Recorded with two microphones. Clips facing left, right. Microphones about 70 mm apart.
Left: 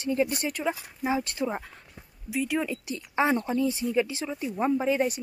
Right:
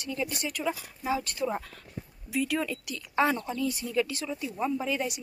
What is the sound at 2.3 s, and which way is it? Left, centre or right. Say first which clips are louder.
A woman's voice: left 1 dB; centre.